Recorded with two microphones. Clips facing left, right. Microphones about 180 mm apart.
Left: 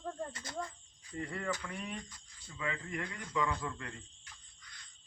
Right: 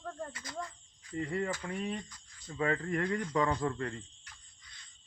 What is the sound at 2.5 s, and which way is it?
Speech, 50° right (ahead or behind).